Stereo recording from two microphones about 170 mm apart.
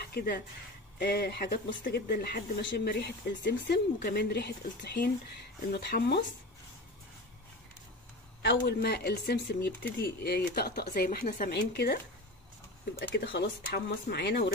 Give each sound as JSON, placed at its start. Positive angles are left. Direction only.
{"t": 0.1, "sound": "speech", "side_deg": 65}
{"t": 8.4, "sound": "speech", "side_deg": 80}
{"t": 9.9, "sound": "speech", "side_deg": 70}
{"t": 11.5, "sound": "speech", "side_deg": 70}
{"t": 13.1, "sound": "speech", "side_deg": 90}